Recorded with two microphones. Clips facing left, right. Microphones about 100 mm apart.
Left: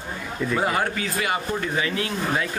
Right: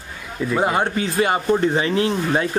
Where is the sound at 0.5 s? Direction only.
25° right (ahead or behind).